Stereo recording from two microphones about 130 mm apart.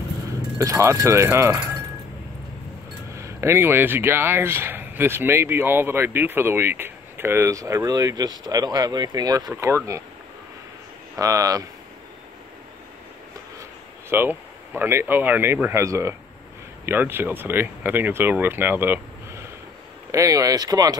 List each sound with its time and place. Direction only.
0.6 s speech: 25° right (ahead or behind)
3.2 s speech: 20° right (ahead or behind)
11.1 s speech: 25° right (ahead or behind)
13.6 s speech: 20° right (ahead or behind)